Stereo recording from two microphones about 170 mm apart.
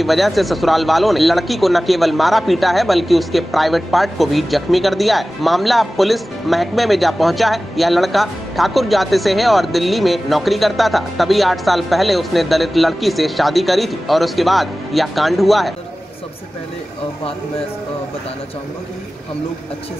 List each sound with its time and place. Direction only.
0.0 s a man's voice: centre (ahead or behind)